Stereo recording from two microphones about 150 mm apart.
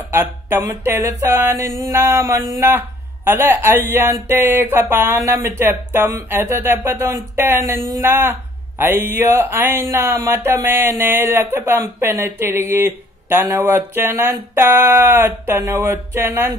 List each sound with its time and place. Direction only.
0.1 s speech: 15° right (ahead or behind)